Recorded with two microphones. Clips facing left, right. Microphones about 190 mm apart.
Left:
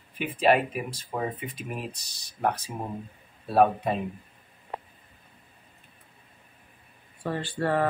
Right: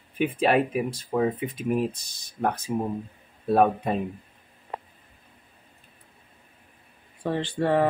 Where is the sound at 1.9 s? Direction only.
55° right (ahead or behind).